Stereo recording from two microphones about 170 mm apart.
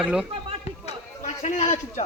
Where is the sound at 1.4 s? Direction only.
45° left (ahead or behind).